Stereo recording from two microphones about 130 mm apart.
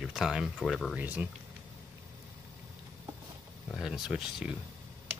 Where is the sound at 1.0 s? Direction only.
15° right (ahead or behind).